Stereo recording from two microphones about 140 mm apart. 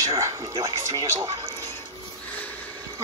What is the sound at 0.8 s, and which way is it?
Speech, 25° right (ahead or behind).